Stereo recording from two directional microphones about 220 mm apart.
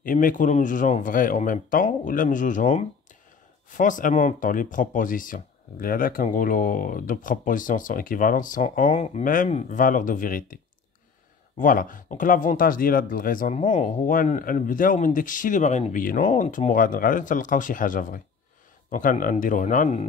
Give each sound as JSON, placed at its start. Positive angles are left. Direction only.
{"t": 0.0, "sound": "speech", "side_deg": 40}
{"t": 11.6, "sound": "speech", "side_deg": 40}